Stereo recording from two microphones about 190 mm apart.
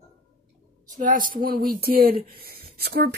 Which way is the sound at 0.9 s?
45° right (ahead or behind).